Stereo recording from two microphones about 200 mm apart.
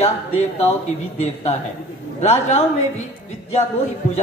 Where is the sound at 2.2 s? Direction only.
30° left (ahead or behind).